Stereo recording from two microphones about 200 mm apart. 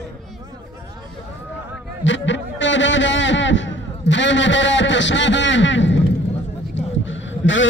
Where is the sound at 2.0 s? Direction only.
65° left (ahead or behind).